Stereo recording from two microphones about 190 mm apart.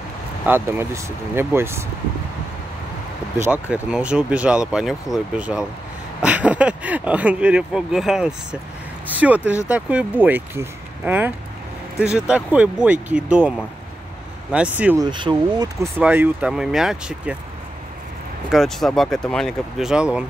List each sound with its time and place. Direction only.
0.5 s speech: 15° right (ahead or behind)
3.7 s speech: 5° right (ahead or behind)
15.0 s speech: 25° right (ahead or behind)
16.0 s speech: 10° right (ahead or behind)
18.5 s speech: centre (ahead or behind)